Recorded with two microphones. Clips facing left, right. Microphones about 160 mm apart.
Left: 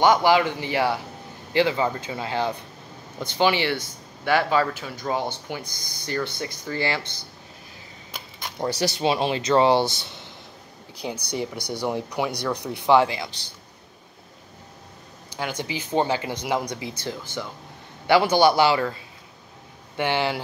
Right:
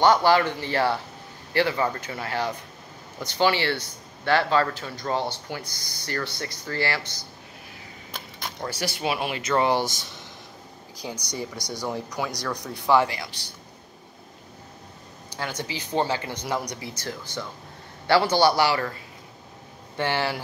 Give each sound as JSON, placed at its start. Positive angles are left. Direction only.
{"t": 0.0, "sound": "speech", "side_deg": 15}
{"t": 7.0, "sound": "a man's voice", "side_deg": 55}
{"t": 8.5, "sound": "speech", "side_deg": 20}
{"t": 11.0, "sound": "speech", "side_deg": 15}
{"t": 11.5, "sound": "a man's voice", "side_deg": 60}
{"t": 12.4, "sound": "speech", "side_deg": 20}
{"t": 15.3, "sound": "speech", "side_deg": 15}
{"t": 20.0, "sound": "speech", "side_deg": 20}